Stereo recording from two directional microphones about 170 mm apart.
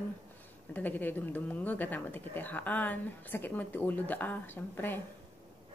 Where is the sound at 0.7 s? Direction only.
10° left (ahead or behind).